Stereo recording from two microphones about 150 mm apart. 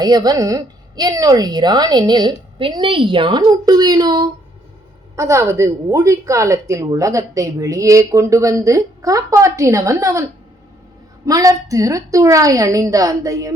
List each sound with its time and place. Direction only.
0.0 s speech: 25° right (ahead or behind)
11.3 s speech: 20° right (ahead or behind)